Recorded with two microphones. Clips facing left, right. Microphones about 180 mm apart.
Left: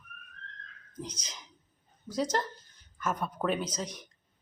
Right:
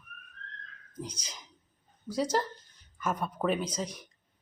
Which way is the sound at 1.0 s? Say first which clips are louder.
Even; 30° right (ahead or behind).